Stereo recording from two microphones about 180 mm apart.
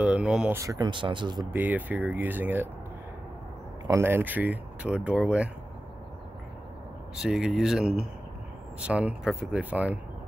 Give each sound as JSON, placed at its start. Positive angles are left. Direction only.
{"t": 0.0, "sound": "speech", "side_deg": -5}
{"t": 0.6, "sound": "speech", "side_deg": -20}
{"t": 1.5, "sound": "speech", "side_deg": -10}
{"t": 3.8, "sound": "speech", "side_deg": -15}
{"t": 7.2, "sound": "speech", "side_deg": 0}